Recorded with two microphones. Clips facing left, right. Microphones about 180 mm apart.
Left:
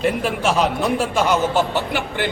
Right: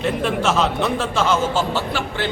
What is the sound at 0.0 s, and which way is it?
A man's voice, 10° left (ahead or behind).